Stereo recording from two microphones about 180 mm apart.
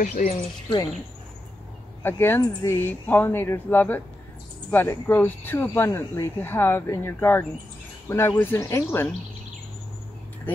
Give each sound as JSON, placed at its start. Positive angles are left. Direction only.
{"t": 0.0, "sound": "speech", "side_deg": 50}
{"t": 0.3, "sound": "speech", "side_deg": 25}
{"t": 2.0, "sound": "speech", "side_deg": 15}